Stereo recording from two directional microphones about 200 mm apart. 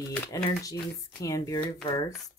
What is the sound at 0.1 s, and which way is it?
Speech, 15° left (ahead or behind).